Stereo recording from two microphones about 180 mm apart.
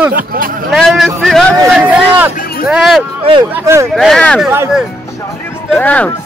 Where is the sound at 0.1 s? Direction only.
50° right (ahead or behind).